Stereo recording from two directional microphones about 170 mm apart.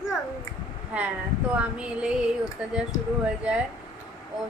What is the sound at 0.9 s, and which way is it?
A woman's voice, 5° right (ahead or behind).